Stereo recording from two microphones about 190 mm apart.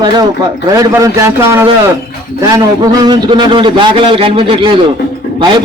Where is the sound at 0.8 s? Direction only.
15° right (ahead or behind).